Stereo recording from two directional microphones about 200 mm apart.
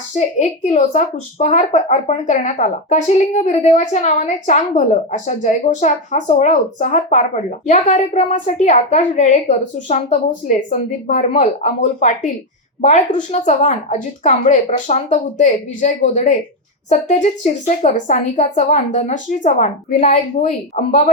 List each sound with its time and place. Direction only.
0.3 s speech: 35° left (ahead or behind)